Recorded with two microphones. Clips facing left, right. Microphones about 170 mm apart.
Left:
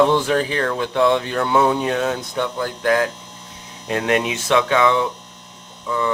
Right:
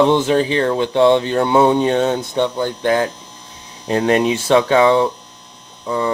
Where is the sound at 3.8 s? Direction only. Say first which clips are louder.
Right 5 dB; 35° right (ahead or behind).